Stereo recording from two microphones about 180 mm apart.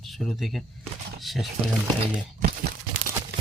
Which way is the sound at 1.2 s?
Centre (ahead or behind).